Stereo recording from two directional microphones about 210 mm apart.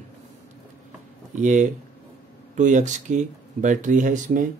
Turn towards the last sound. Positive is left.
turn(degrees=-40)  # may be behind; listen again after turning